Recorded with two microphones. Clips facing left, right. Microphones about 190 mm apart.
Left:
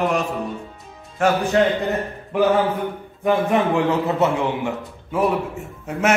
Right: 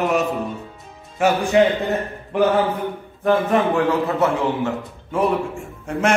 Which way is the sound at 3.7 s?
20° left (ahead or behind).